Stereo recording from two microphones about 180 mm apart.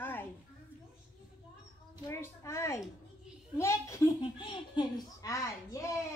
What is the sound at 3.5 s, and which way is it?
Speech, 15° left (ahead or behind).